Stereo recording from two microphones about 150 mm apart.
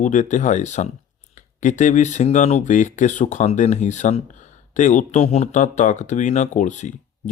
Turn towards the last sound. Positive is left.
turn(degrees=55)  # may be behind; listen again after turning